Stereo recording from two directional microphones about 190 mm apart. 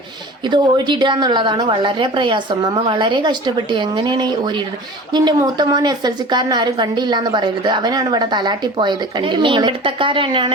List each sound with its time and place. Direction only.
0.4 s a woman's voice: 25° right (ahead or behind)